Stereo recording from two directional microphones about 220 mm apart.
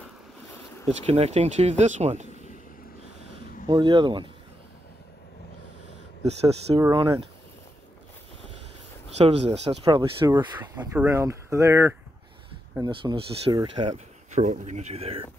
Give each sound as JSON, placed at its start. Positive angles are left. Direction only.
{"t": 0.8, "sound": "speech", "side_deg": -30}
{"t": 3.6, "sound": "speech", "side_deg": -20}
{"t": 6.7, "sound": "speech", "side_deg": -15}
{"t": 9.2, "sound": "speech", "side_deg": -30}